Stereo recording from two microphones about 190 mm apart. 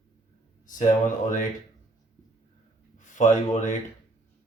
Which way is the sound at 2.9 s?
40° left (ahead or behind).